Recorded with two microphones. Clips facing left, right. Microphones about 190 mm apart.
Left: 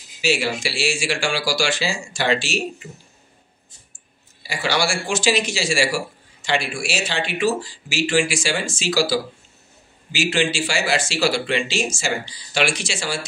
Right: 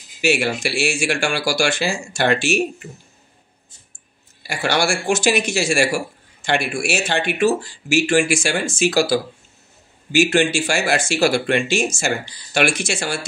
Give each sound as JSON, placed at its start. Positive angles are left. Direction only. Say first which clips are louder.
{"t": 0.2, "sound": "speech", "louder": "right 3 dB", "side_deg": -55}
{"t": 4.4, "sound": "speech", "louder": "right 2 dB", "side_deg": -55}